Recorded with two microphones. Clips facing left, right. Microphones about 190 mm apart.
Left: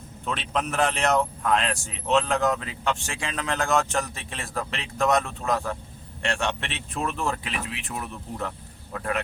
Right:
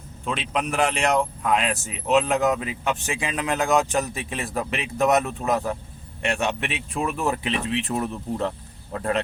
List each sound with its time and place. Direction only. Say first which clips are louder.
0.3 s speech: right 2 dB; 5° right (ahead or behind)
1.1 s speech: right 1 dB; 10° right (ahead or behind)
7.9 s speech: right 8 dB; 35° right (ahead or behind)